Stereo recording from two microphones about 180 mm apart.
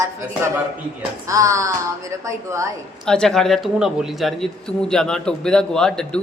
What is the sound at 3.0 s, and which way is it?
A man's voice, 5° left (ahead or behind).